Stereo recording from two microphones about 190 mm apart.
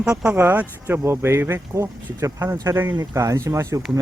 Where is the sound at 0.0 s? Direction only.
5° right (ahead or behind).